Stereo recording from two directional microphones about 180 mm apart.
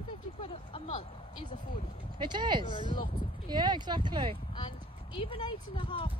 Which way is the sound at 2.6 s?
25° left (ahead or behind).